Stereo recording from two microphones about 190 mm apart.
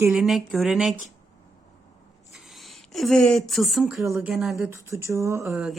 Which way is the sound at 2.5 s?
Centre (ahead or behind).